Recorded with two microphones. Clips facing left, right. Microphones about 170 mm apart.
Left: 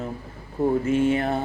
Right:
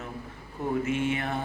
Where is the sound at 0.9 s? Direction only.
35° left (ahead or behind).